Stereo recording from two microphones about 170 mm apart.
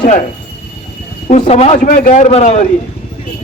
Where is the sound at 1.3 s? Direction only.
40° left (ahead or behind).